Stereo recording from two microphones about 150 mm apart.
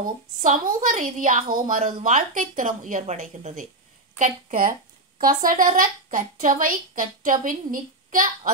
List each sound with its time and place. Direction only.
0.0 s a woman's voice: 65° right (ahead or behind)